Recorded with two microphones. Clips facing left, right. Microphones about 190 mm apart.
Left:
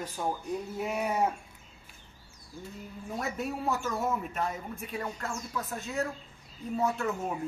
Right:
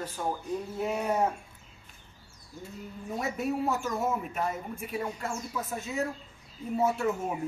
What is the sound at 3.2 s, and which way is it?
Speech, centre (ahead or behind).